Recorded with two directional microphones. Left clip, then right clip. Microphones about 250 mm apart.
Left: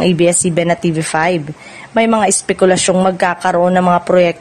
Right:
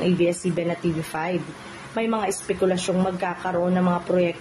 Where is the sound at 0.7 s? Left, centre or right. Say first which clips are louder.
Left 11 dB; left.